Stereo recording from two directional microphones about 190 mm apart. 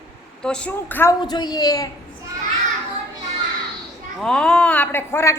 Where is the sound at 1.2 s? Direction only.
20° left (ahead or behind).